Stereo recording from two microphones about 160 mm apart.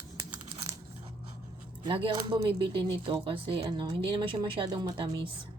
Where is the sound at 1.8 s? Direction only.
35° right (ahead or behind).